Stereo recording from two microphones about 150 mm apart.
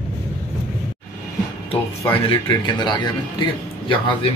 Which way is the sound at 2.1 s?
35° left (ahead or behind).